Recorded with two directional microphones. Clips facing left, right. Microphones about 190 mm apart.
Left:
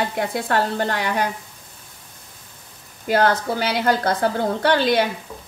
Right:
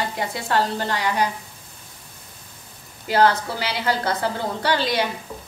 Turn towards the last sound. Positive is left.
turn(degrees=55)  # may be behind; listen again after turning